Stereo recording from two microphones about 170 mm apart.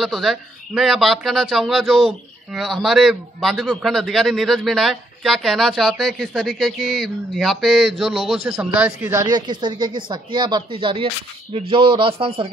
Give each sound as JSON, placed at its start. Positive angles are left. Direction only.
{"t": 0.0, "sound": "a man's voice", "side_deg": 0}